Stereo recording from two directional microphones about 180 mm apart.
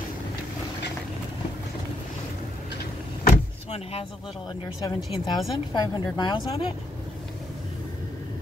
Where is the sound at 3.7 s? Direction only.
35° left (ahead or behind).